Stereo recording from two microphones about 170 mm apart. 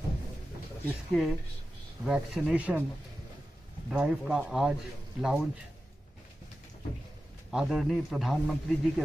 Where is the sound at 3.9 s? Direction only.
5° right (ahead or behind).